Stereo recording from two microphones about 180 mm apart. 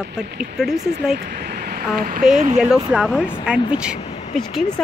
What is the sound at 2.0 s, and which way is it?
Speech, 50° right (ahead or behind).